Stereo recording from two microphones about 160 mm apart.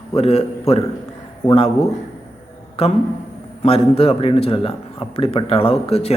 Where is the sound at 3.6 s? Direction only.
40° left (ahead or behind).